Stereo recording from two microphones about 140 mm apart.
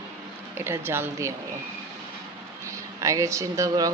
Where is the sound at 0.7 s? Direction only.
15° right (ahead or behind).